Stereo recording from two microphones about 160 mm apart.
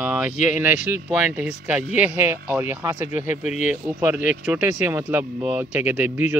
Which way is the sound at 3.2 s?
50° left (ahead or behind).